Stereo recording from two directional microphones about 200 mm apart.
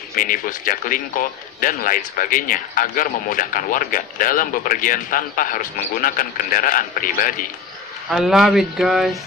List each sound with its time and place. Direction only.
0.1 s a man's voice: 45° left (ahead or behind)
8.1 s speech: centre (ahead or behind)